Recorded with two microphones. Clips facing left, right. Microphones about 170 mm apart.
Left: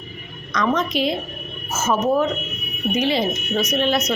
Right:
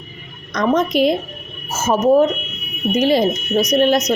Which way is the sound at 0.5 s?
40° right (ahead or behind).